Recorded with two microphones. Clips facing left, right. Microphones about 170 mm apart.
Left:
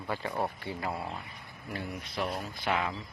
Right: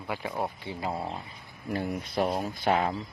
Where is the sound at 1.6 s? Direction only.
50° right (ahead or behind).